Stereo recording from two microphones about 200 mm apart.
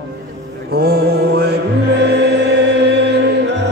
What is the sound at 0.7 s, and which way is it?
Mantra, 50° right (ahead or behind).